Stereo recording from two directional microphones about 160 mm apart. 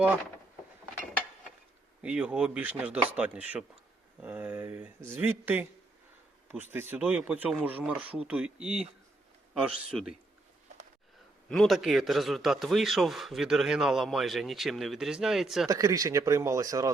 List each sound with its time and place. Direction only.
2.0 s a man's voice: 5° right (ahead or behind)
11.4 s a man's voice: 5° left (ahead or behind)
15.6 s speech: 20° right (ahead or behind)